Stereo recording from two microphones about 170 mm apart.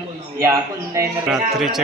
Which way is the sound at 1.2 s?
Centre (ahead or behind).